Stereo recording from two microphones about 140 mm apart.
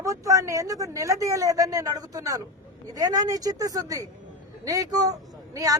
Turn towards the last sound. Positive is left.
turn(degrees=-25)  # may be behind; listen again after turning